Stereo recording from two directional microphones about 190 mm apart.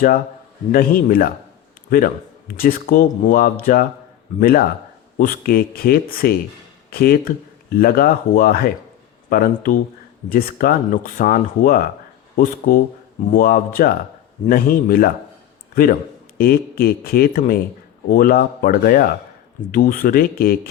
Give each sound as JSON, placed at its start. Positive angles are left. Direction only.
{"t": 0.7, "sound": "a man's voice", "side_deg": 50}